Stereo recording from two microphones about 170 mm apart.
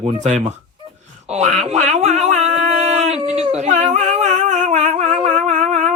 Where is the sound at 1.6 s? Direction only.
40° right (ahead or behind).